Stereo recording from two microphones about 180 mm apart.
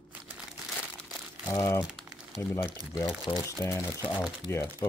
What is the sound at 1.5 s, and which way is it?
Speech, 15° left (ahead or behind).